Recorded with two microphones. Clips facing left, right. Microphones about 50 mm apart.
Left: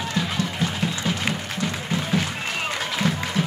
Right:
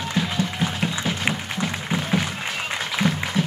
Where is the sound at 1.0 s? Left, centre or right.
Centre.